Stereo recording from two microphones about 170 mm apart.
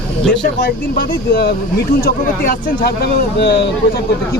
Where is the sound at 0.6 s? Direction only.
60° left (ahead or behind).